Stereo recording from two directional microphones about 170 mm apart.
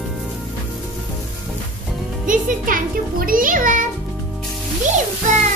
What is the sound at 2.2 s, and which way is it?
A child's voice, 50° right (ahead or behind).